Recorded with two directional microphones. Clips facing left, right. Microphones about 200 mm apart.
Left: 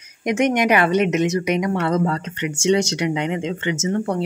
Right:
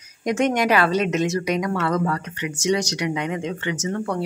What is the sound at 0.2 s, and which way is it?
A woman's voice, 20° left (ahead or behind).